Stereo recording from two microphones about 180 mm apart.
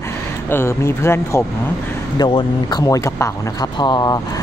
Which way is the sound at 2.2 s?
25° left (ahead or behind).